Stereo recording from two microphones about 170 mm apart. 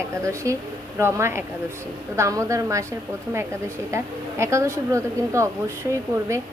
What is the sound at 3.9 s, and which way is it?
Speech, 15° right (ahead or behind).